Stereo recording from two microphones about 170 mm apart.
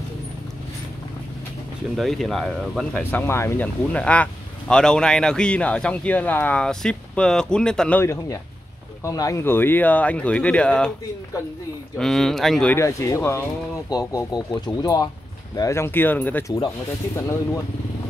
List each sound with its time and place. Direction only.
2.0 s speech: centre (ahead or behind)
8.0 s speech: 15° left (ahead or behind)
12.0 s speech: centre (ahead or behind)
12.7 s speech: 15° left (ahead or behind)